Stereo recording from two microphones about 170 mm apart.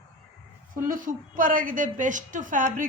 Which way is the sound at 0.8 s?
55° right (ahead or behind).